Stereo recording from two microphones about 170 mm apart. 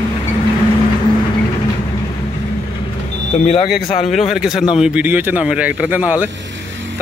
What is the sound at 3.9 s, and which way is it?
Speech, 35° left (ahead or behind).